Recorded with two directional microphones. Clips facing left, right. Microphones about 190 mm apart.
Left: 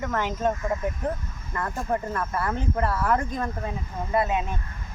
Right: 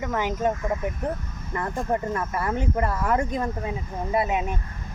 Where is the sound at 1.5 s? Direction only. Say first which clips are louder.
Right 2 dB; 15° right (ahead or behind).